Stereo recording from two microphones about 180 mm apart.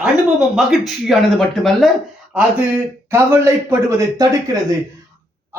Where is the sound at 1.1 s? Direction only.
5° left (ahead or behind).